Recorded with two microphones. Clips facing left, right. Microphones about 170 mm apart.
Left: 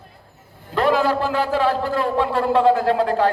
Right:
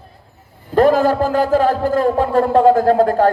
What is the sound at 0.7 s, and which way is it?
Speech, 45° right (ahead or behind).